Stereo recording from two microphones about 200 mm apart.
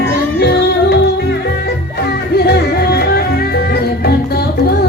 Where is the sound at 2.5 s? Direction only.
55° left (ahead or behind).